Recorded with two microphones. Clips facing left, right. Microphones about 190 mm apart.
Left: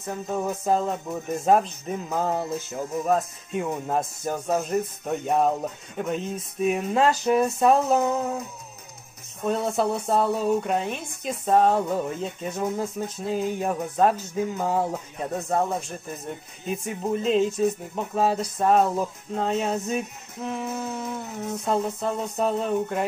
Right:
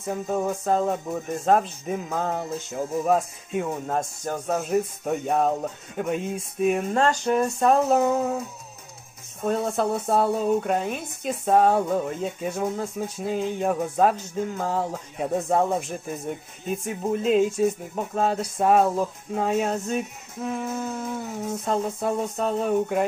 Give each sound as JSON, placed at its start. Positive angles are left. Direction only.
{"t": 0.0, "sound": "speech", "side_deg": 0}
{"t": 9.5, "sound": "speech", "side_deg": 0}
{"t": 15.1, "sound": "speech", "side_deg": -15}
{"t": 16.3, "sound": "speech", "side_deg": 0}